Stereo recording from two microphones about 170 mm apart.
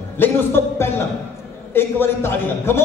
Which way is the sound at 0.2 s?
15° left (ahead or behind).